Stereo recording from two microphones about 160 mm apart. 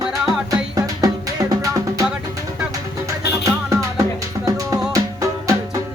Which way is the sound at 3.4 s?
20° right (ahead or behind).